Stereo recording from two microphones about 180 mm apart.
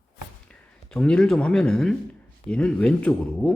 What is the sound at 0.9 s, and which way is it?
Speech, 5° left (ahead or behind).